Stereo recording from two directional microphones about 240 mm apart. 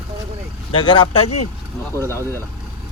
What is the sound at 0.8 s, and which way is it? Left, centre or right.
Speech, centre.